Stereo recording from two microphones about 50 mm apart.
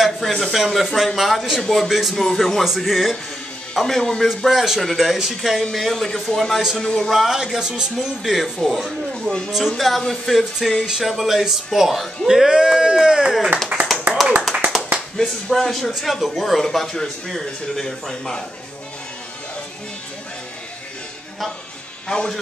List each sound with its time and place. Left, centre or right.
0.0 s speech: centre
3.7 s speech: centre
4.5 s speech: centre
7.1 s speech: centre
13.7 s clapping: right
14.5 s clapping: right
15.1 s speech: centre
22.0 s a man's voice: centre